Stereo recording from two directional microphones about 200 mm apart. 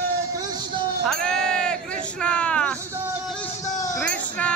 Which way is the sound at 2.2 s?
5° left (ahead or behind).